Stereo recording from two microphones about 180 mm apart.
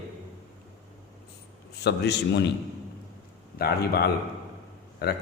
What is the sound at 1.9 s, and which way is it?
Speech, 70° left (ahead or behind).